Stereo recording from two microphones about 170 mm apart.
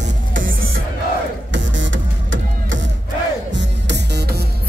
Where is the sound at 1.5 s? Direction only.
90° right.